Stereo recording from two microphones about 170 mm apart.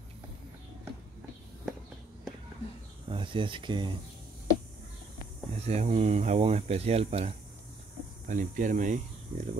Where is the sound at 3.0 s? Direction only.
30° right (ahead or behind).